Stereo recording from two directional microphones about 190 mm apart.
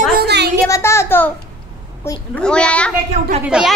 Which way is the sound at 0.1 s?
60° right (ahead or behind).